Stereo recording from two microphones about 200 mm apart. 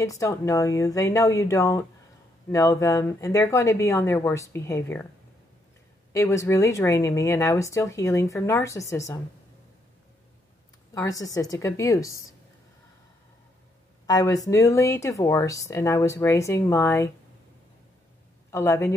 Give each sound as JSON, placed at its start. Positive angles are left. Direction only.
{"t": 0.0, "sound": "speech", "side_deg": 15}
{"t": 6.1, "sound": "speech", "side_deg": 15}
{"t": 11.0, "sound": "speech", "side_deg": 15}
{"t": 14.0, "sound": "speech", "side_deg": 15}
{"t": 18.5, "sound": "speech", "side_deg": 15}